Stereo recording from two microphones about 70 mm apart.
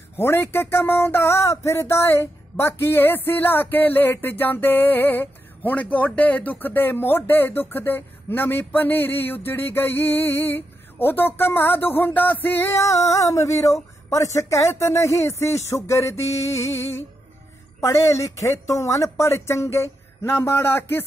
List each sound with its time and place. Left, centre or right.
0.2 s speech: left
2.8 s a sound: left
12.7 s a woman's voice: left